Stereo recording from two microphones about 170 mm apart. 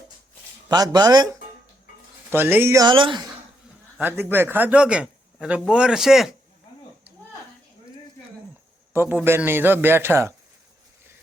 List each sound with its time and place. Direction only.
0.7 s speech: 25° right (ahead or behind)
2.3 s speech: 15° right (ahead or behind); by 3.2 s 30° right (ahead or behind)
4.0 s a man's voice: 10° right (ahead or behind)
8.9 s a man's voice: 10° right (ahead or behind)